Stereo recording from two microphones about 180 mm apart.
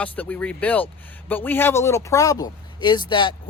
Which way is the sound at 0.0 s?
10° left (ahead or behind).